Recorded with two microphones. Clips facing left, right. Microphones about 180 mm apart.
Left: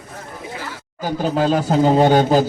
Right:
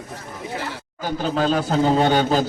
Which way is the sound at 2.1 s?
40° left (ahead or behind).